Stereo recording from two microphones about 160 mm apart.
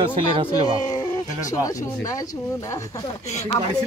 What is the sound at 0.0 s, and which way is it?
Speech, 30° right (ahead or behind).